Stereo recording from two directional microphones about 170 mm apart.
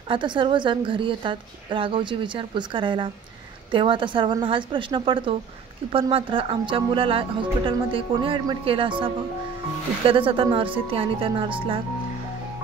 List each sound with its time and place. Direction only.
0.1 s a woman's voice: 30° right (ahead or behind)